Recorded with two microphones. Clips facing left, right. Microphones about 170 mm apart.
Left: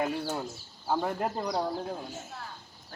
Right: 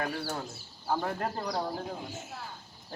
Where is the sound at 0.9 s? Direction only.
10° left (ahead or behind).